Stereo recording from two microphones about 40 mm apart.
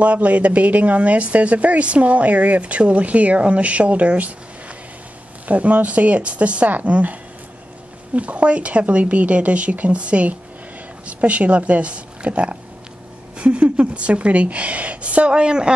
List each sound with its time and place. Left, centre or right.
0.0 s speech: right
5.5 s speech: right
8.2 s speech: right